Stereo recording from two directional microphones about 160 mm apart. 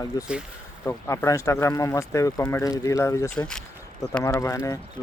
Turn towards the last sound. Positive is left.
turn(degrees=20)  # may be behind; listen again after turning